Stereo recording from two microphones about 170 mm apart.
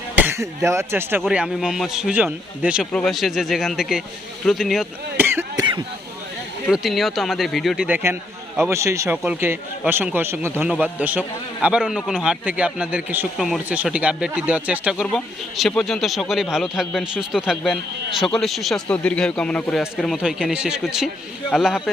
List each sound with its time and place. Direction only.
0.2 s a man's voice: 15° right (ahead or behind)
5.1 s cough: 15° right (ahead or behind)
6.7 s a man's voice: centre (ahead or behind)